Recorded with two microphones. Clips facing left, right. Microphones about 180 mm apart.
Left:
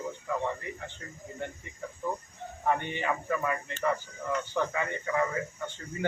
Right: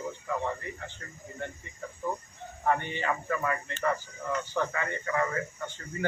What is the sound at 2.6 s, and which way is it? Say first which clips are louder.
A man's voice: right 1 dB; 15° left (ahead or behind).